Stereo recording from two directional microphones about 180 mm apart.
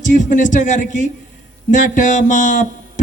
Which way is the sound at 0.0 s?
45° left (ahead or behind).